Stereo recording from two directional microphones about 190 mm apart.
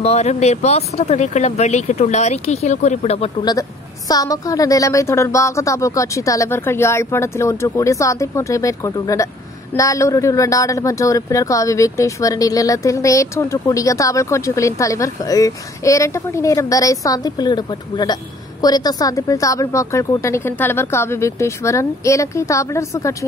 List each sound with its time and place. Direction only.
0.0 s speech: 35° left (ahead or behind)
4.1 s speech: 20° left (ahead or behind)